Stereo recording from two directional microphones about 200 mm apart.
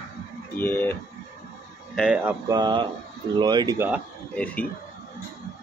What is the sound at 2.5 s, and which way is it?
Speech, 20° right (ahead or behind).